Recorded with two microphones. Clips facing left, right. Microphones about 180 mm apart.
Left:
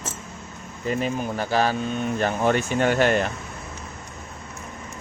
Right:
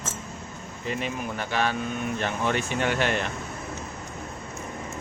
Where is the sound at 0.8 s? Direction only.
40° left (ahead or behind).